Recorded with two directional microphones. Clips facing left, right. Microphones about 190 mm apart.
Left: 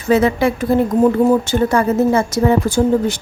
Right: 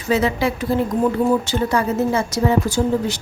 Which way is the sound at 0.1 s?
55° left (ahead or behind).